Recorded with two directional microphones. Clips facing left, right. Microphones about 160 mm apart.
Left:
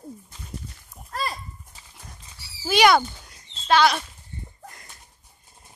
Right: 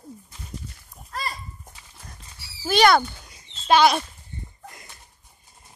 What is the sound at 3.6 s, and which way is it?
Speech, 15° right (ahead or behind).